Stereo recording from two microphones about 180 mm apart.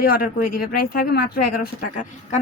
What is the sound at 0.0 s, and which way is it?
A woman's voice, 55° left (ahead or behind).